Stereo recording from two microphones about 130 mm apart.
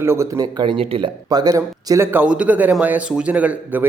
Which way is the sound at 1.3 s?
30° right (ahead or behind).